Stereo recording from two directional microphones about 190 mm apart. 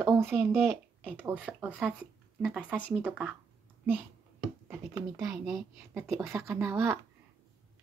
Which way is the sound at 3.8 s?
10° right (ahead or behind).